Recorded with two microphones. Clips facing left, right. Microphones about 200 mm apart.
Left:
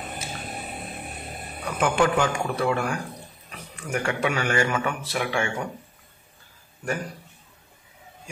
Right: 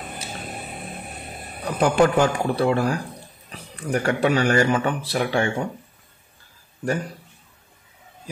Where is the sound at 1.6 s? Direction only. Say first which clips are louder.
Right 4 dB; 35° right (ahead or behind).